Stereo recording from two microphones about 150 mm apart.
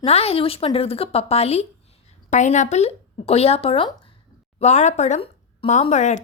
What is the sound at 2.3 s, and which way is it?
Speech, 55° left (ahead or behind).